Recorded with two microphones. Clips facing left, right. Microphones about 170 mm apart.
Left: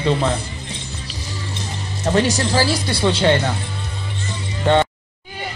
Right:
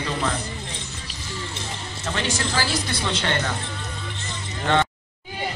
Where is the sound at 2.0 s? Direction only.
35° left (ahead or behind).